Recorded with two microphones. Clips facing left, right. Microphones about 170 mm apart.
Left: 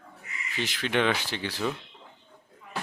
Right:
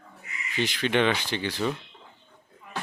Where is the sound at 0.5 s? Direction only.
Centre (ahead or behind).